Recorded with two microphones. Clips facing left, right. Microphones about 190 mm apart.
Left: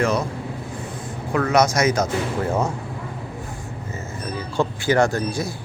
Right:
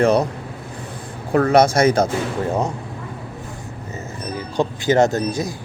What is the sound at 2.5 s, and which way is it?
Speech, 15° right (ahead or behind).